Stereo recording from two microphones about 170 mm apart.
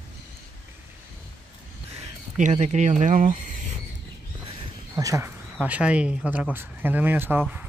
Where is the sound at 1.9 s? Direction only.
45° right (ahead or behind).